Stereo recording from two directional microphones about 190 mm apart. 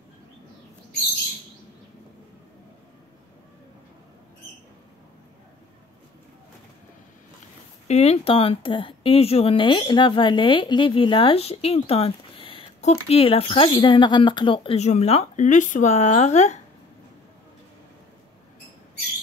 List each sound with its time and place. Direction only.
7.9 s speech: 35° left (ahead or behind)